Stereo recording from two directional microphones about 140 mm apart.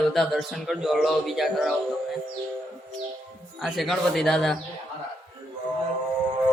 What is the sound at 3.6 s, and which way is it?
Speech, centre (ahead or behind).